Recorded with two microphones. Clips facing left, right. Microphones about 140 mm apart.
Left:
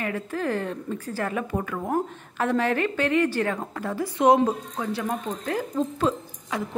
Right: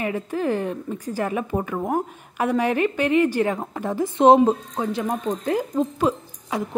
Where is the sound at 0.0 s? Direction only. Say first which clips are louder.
Right 4 dB; 15° right (ahead or behind).